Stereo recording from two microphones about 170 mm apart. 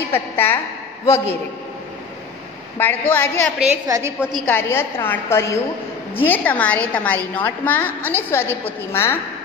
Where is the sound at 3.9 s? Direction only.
20° right (ahead or behind).